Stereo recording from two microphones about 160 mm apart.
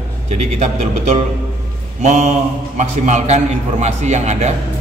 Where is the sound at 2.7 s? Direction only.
45° right (ahead or behind).